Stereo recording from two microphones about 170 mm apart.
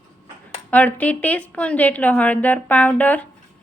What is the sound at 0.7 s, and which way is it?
A woman's voice, 10° left (ahead or behind).